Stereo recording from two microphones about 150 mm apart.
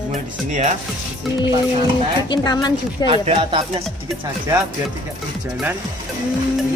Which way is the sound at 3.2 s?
35° right (ahead or behind).